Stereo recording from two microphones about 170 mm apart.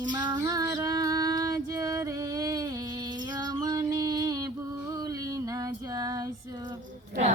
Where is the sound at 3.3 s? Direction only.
20° right (ahead or behind).